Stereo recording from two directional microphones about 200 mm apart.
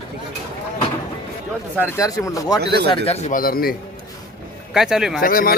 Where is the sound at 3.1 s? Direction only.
35° left (ahead or behind).